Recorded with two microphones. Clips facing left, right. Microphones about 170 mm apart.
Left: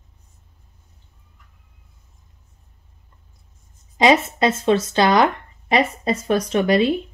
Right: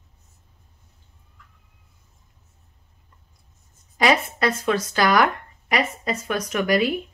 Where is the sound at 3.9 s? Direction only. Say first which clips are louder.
Left 4 dB; 25° left (ahead or behind).